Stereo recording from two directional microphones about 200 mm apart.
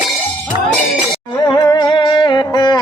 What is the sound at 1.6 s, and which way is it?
Music, 20° left (ahead or behind).